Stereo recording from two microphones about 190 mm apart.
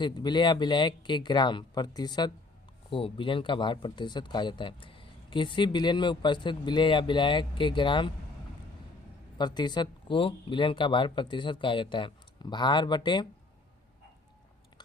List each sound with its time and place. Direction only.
0.0 s speech: 20° left (ahead or behind)
9.4 s speech: 20° left (ahead or behind)